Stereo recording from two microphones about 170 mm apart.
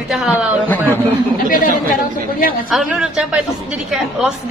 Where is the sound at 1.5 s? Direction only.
55° left (ahead or behind).